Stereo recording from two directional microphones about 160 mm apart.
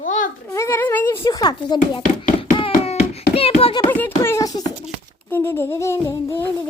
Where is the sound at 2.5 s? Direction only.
35° left (ahead or behind).